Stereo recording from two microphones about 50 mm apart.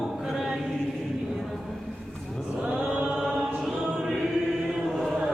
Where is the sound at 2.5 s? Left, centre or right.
Centre.